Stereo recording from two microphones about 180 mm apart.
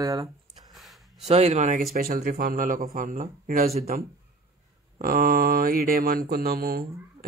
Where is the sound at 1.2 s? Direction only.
40° right (ahead or behind).